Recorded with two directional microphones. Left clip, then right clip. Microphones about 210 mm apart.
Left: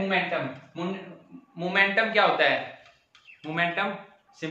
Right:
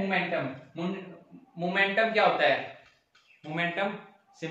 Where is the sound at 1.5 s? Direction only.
10° left (ahead or behind).